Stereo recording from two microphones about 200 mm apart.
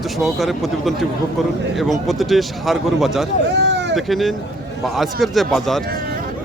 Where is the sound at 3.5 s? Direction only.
60° right (ahead or behind).